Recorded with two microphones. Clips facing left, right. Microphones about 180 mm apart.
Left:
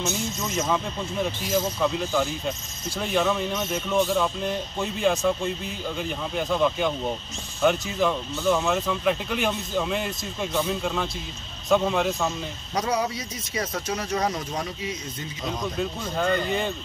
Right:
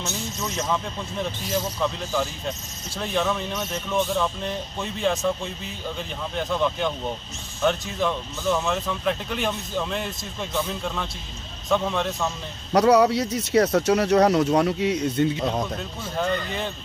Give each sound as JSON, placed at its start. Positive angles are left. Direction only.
{"t": 0.4, "sound": "speech", "side_deg": 10}
{"t": 12.7, "sound": "speech", "side_deg": -65}